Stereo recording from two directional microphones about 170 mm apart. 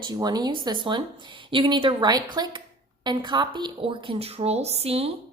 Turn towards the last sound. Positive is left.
turn(degrees=-35)  # may be behind; listen again after turning